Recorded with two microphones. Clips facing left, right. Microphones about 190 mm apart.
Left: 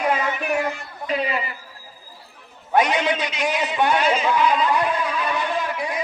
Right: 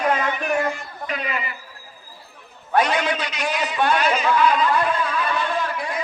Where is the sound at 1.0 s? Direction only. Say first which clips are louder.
Left 4 dB; 30° left (ahead or behind).